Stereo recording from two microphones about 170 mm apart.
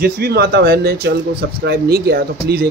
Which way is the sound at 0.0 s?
65° right (ahead or behind).